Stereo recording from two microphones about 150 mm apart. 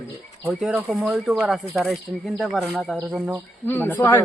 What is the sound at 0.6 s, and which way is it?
Speech, 10° right (ahead or behind).